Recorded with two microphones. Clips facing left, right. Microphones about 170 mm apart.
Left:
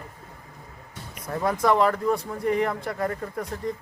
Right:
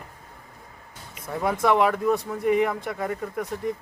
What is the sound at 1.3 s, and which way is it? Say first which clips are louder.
Speech: even; 5° right (ahead or behind).